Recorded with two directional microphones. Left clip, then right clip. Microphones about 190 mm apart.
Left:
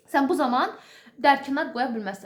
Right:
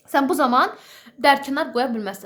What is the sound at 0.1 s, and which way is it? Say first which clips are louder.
A woman's voice: right 4 dB; 30° right (ahead or behind).